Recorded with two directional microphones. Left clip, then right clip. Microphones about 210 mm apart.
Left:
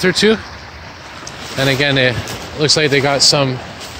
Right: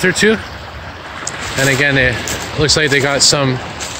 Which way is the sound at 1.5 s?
10° left (ahead or behind).